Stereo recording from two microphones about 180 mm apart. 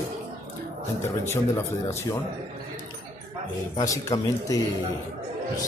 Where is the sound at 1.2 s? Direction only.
15° left (ahead or behind).